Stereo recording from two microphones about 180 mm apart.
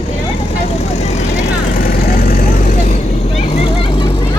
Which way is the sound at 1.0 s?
40° left (ahead or behind).